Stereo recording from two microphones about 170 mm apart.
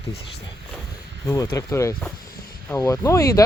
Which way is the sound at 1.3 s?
20° left (ahead or behind).